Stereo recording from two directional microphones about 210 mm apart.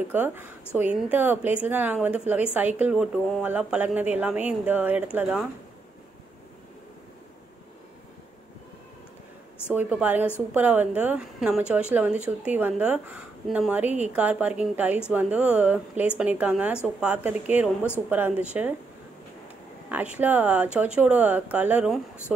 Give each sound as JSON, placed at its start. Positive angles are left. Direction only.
{"t": 0.1, "sound": "a woman's voice", "side_deg": -10}
{"t": 9.8, "sound": "a woman's voice", "side_deg": -10}
{"t": 19.9, "sound": "a woman's voice", "side_deg": -5}